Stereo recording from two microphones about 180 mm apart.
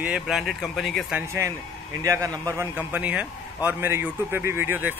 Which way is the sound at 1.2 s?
15° right (ahead or behind).